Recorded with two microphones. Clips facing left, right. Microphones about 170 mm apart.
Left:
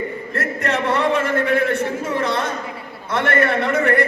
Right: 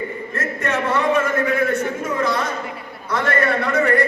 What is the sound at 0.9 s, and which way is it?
A man's voice, 30° left (ahead or behind).